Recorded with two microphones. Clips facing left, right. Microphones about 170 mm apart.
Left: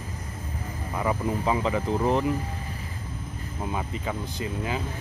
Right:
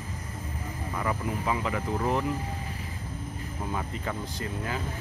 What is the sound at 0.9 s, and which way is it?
Speech, 25° left (ahead or behind).